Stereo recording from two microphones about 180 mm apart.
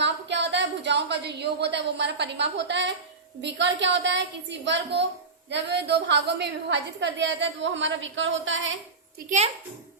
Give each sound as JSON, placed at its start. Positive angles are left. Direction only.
{"t": 0.0, "sound": "a woman's voice", "side_deg": -75}